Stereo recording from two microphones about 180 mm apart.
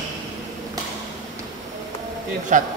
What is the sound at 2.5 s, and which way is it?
Speech, 45° right (ahead or behind).